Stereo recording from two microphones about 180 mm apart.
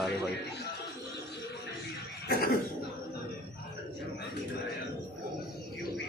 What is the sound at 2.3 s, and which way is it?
Cough, 55° left (ahead or behind).